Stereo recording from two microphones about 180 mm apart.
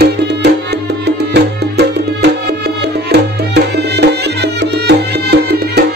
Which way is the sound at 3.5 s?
70° right (ahead or behind).